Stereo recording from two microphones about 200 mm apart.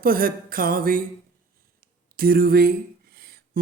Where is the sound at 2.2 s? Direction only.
50° right (ahead or behind).